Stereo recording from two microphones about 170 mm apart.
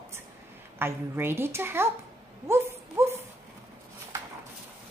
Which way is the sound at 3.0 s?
15° right (ahead or behind).